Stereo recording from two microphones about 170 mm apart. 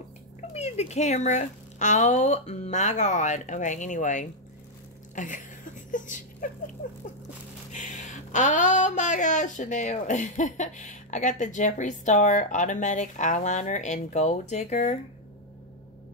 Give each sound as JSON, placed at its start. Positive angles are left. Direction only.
{"t": 0.5, "sound": "speech", "side_deg": 40}
{"t": 5.1, "sound": "a sound", "side_deg": 50}
{"t": 7.7, "sound": "speech", "side_deg": 45}